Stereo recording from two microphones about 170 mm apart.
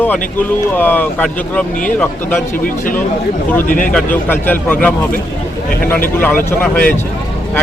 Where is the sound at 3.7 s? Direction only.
55° left (ahead or behind).